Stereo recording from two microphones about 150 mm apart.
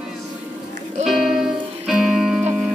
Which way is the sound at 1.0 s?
Centre (ahead or behind).